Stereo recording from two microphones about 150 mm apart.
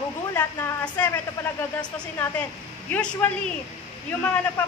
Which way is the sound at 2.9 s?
10° left (ahead or behind).